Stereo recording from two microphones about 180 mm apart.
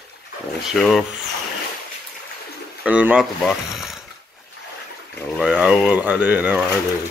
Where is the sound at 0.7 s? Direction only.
Centre (ahead or behind).